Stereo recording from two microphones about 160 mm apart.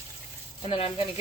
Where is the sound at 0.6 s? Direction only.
35° left (ahead or behind).